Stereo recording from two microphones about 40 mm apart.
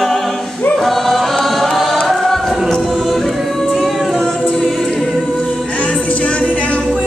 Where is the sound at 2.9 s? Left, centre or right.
Centre.